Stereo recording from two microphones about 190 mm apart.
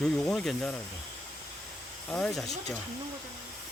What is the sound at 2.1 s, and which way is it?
Speech, centre (ahead or behind).